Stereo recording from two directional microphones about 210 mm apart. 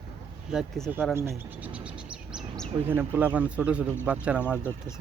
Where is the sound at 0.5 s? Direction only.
Centre (ahead or behind).